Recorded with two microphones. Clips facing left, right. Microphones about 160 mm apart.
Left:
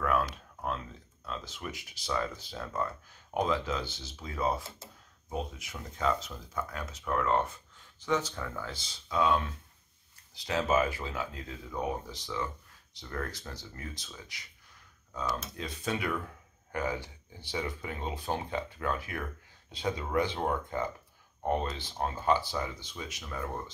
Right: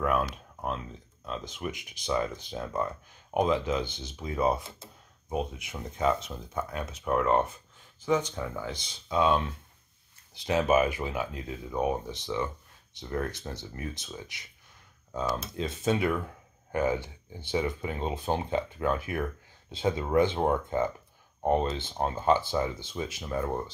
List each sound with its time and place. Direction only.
0.0 s a sound: 15° right (ahead or behind)
1.2 s speech: 20° right (ahead or behind)
6.2 s speech: 25° right (ahead or behind)